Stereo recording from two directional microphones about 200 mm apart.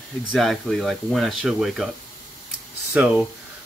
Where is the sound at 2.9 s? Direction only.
5° right (ahead or behind).